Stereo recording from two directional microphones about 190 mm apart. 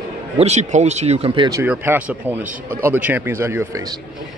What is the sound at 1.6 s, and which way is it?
Speech, 10° right (ahead or behind).